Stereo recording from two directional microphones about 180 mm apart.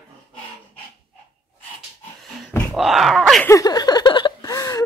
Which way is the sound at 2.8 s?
Centre (ahead or behind).